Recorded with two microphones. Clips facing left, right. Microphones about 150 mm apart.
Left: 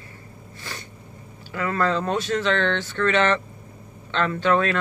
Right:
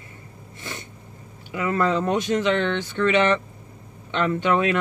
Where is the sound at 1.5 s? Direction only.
20° right (ahead or behind).